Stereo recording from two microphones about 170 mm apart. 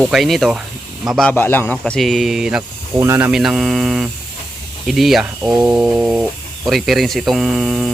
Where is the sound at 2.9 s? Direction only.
15° right (ahead or behind).